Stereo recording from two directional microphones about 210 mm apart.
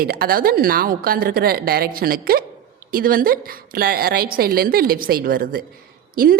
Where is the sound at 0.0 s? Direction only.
45° right (ahead or behind).